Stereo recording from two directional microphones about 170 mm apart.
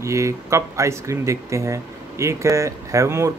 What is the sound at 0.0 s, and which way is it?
Speech, 15° right (ahead or behind).